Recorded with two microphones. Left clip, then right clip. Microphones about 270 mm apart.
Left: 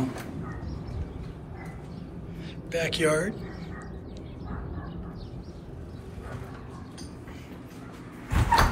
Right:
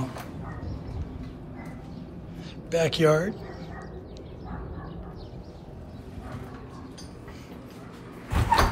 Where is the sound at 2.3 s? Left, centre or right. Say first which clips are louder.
Right 4 dB; centre.